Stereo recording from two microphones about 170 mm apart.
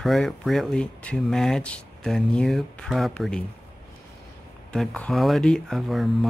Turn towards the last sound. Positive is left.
turn(degrees=0)  # may be behind; listen again after turning